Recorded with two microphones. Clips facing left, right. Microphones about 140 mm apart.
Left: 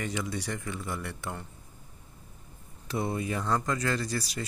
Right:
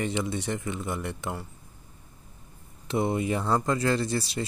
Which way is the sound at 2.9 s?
25° right (ahead or behind).